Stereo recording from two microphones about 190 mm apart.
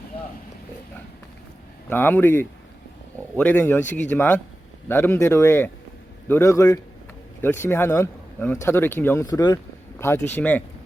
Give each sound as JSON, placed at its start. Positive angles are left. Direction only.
{"t": 1.9, "sound": "speech", "side_deg": 10}